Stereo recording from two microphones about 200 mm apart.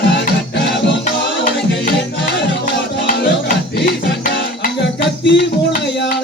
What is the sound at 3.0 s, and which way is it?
Music, 45° left (ahead or behind).